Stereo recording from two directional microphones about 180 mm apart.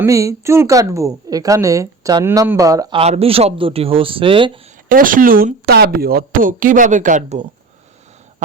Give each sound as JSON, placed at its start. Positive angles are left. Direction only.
{"t": 0.0, "sound": "speech", "side_deg": -15}
{"t": 3.0, "sound": "speech", "side_deg": -35}
{"t": 4.9, "sound": "speech", "side_deg": -50}